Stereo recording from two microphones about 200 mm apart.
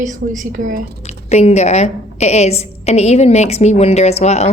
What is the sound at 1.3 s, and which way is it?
A woman's voice, 35° left (ahead or behind).